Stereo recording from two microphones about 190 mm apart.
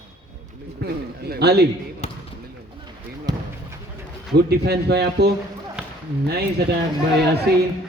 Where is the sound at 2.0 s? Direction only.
35° left (ahead or behind).